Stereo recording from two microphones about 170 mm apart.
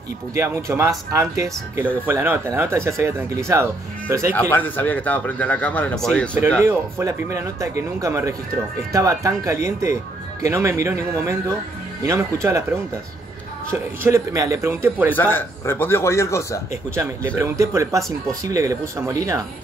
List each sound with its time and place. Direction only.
0.3 s speech: 15° right (ahead or behind)
4.3 s speech: 10° left (ahead or behind)
6.6 s speech: 15° right (ahead or behind)
13.7 s speech: 15° right (ahead or behind)
15.1 s speech: 10° left (ahead or behind)
16.9 s speech: 15° right (ahead or behind)